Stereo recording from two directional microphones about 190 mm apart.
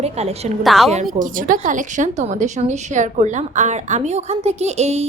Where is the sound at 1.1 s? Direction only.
45° right (ahead or behind).